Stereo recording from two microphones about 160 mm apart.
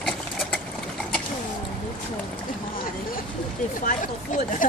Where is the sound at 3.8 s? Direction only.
55° left (ahead or behind).